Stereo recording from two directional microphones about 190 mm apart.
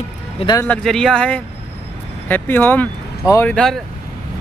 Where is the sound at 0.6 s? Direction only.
5° left (ahead or behind).